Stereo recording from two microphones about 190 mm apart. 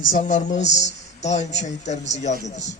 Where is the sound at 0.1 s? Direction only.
40° left (ahead or behind).